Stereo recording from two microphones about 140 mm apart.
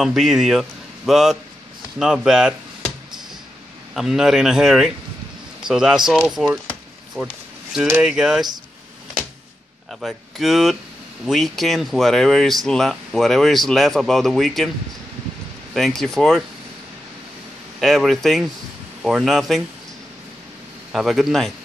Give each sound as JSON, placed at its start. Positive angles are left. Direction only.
{"t": 0.0, "sound": "speech", "side_deg": -5}
{"t": 3.9, "sound": "speech", "side_deg": -5}
{"t": 9.9, "sound": "speech", "side_deg": 0}
{"t": 15.7, "sound": "speech", "side_deg": 0}
{"t": 17.7, "sound": "speech", "side_deg": 0}
{"t": 20.9, "sound": "speech", "side_deg": 0}